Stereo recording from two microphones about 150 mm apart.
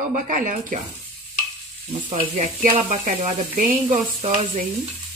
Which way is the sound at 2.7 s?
55° right (ahead or behind).